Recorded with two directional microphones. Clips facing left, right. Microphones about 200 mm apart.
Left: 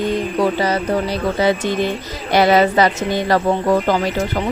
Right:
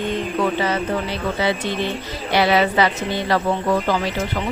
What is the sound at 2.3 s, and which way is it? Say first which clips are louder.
Speech: left 4 dB; 45° left (ahead or behind).